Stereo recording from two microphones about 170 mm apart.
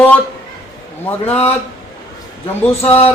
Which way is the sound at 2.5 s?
10° left (ahead or behind).